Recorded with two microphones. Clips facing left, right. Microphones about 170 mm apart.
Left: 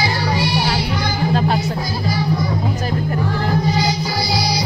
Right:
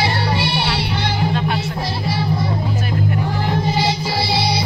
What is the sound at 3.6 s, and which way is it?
Music, 25° right (ahead or behind).